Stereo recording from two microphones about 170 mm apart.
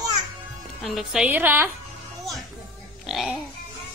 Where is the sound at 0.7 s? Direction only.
Centre (ahead or behind).